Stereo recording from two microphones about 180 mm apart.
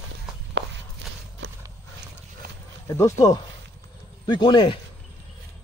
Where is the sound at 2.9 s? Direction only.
15° left (ahead or behind).